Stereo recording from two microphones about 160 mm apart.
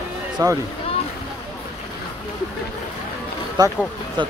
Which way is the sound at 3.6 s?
25° right (ahead or behind).